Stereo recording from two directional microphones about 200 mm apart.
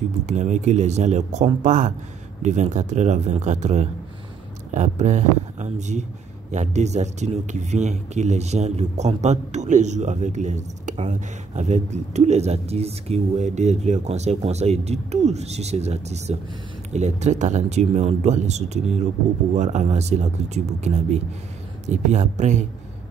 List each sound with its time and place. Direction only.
0.3 s speech: 35° right (ahead or behind)